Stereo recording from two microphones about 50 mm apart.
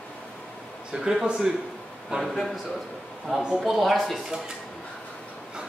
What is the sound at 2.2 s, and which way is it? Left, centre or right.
Speech, centre.